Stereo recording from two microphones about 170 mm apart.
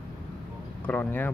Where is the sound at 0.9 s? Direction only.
10° left (ahead or behind).